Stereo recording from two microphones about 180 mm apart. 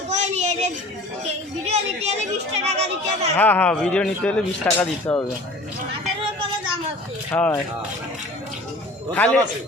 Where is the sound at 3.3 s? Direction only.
10° left (ahead or behind).